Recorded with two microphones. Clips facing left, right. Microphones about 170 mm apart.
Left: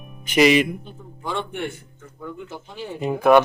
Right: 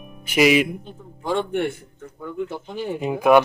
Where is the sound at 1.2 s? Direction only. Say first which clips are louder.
Right 5 dB; 40° right (ahead or behind).